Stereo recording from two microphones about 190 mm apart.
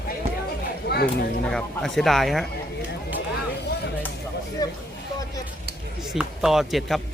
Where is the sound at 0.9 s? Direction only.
60° left (ahead or behind).